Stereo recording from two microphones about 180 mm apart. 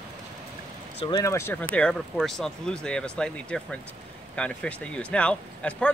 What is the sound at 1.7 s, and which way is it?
Speech, 5° left (ahead or behind).